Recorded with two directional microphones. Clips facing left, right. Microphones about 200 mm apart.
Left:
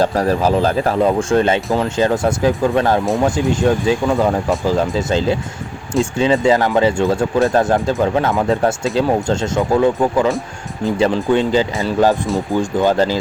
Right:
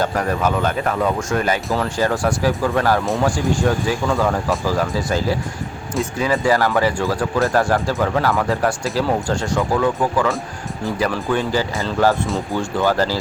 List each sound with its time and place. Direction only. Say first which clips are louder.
0.0 s speech: left 4 dB; 30° left (ahead or behind)